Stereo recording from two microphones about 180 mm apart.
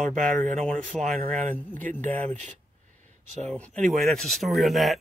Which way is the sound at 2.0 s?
10° left (ahead or behind).